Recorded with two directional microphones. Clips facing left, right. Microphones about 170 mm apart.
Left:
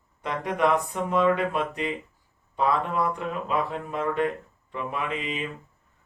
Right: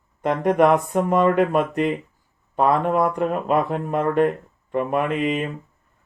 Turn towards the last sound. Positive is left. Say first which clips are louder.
# right 8 dB
turn(degrees=-55)  # may be behind; listen again after turning